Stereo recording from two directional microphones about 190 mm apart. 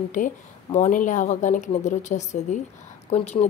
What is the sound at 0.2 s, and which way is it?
Speech, 40° left (ahead or behind).